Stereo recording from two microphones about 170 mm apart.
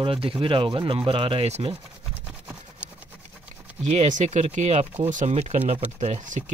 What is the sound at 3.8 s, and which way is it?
Speech, 45° right (ahead or behind).